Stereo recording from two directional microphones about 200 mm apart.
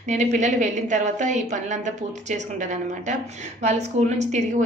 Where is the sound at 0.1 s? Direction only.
35° right (ahead or behind).